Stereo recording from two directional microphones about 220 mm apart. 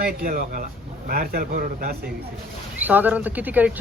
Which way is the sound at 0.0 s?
45° right (ahead or behind).